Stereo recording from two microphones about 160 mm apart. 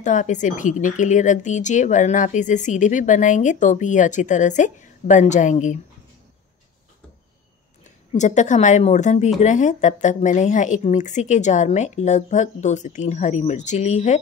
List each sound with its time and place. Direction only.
0.0 s speech: 50° left (ahead or behind)
8.1 s speech: 50° left (ahead or behind)